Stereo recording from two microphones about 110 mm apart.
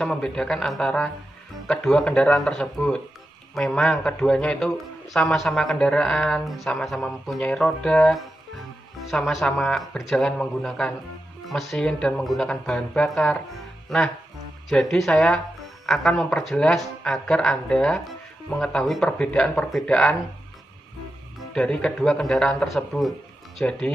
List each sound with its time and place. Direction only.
0.0 s speech: 5° left (ahead or behind)
21.5 s speech: 10° left (ahead or behind)